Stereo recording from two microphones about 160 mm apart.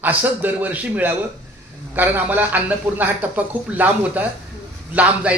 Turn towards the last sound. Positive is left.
turn(degrees=-10)  # may be behind; listen again after turning